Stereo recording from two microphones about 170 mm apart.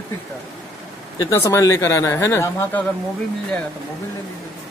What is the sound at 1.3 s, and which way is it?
Speech, 15° left (ahead or behind).